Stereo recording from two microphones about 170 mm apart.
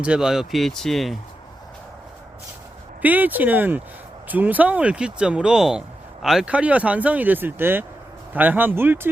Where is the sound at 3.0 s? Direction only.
10° right (ahead or behind).